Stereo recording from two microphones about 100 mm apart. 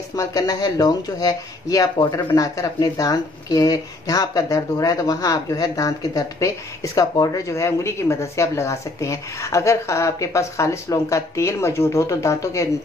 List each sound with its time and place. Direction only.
0.1 s speech: 35° left (ahead or behind)